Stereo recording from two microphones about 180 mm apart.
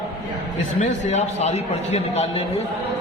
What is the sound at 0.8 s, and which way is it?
A man's voice, 40° left (ahead or behind).